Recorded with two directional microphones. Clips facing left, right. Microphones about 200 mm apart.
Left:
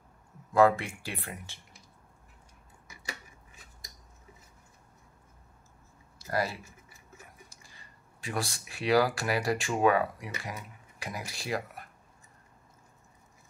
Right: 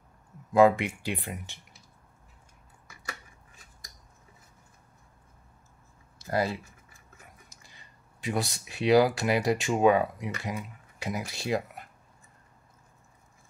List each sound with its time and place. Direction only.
0.5 s speech: 15° right (ahead or behind)
6.1 s a sound: 25° right (ahead or behind)
8.2 s speech: 20° right (ahead or behind)